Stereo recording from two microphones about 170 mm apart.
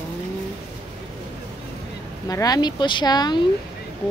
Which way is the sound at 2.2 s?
20° left (ahead or behind).